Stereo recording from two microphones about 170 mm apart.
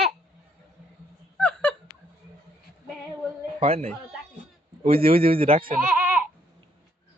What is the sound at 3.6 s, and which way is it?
Speech, 35° right (ahead or behind).